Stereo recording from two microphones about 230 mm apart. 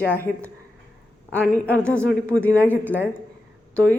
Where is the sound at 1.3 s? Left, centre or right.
Centre.